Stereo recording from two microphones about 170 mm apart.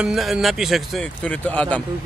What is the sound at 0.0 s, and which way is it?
Speech, centre (ahead or behind).